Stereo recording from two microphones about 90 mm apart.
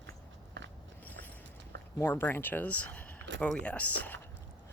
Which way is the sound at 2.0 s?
25° left (ahead or behind).